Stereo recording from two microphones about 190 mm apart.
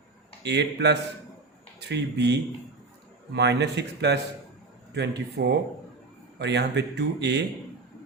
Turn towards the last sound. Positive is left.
turn(degrees=-65)  # may be behind; listen again after turning